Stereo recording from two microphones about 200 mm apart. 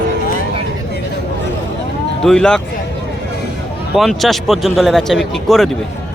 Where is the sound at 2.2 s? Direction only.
5° left (ahead or behind).